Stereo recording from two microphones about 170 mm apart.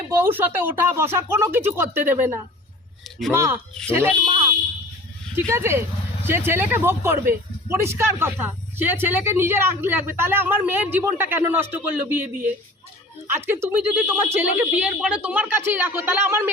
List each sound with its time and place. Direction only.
0.1 s speech: 10° right (ahead or behind)